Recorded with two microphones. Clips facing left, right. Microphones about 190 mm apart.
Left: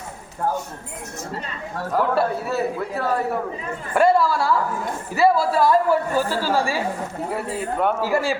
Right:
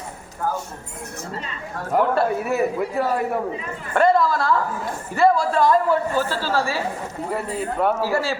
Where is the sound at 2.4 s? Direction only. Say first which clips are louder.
Right 2 dB; 15° right (ahead or behind).